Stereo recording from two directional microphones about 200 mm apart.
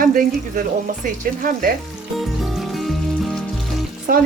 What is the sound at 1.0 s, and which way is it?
Speech, 40° right (ahead or behind).